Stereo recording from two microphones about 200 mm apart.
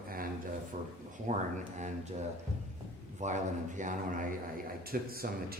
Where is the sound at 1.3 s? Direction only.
30° right (ahead or behind).